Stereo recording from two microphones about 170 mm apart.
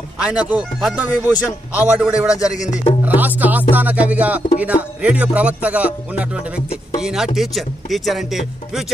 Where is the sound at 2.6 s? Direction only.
45° left (ahead or behind).